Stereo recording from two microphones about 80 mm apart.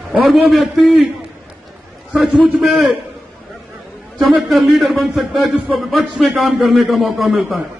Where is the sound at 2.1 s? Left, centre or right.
Centre.